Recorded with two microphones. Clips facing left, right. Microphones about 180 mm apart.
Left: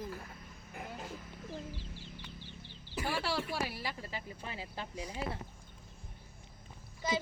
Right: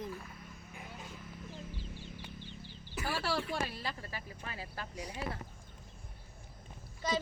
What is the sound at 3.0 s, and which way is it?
Speech, 20° left (ahead or behind).